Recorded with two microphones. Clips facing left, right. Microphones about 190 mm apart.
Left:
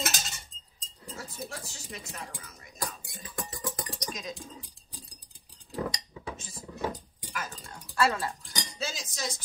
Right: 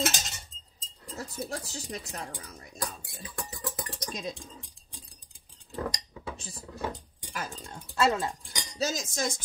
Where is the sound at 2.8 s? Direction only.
Centre (ahead or behind).